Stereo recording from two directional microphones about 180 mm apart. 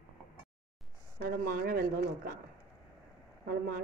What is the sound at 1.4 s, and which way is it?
Speech, 55° right (ahead or behind).